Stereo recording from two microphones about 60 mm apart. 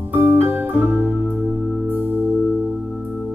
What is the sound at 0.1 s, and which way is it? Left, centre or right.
Music, right.